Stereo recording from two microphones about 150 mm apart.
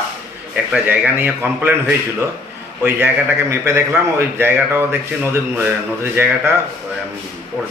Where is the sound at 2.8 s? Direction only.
15° right (ahead or behind).